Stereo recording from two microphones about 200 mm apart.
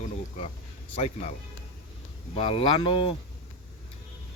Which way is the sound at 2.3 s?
25° left (ahead or behind).